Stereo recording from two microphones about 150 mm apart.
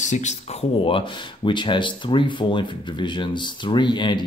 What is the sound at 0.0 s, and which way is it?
Speech, 50° left (ahead or behind).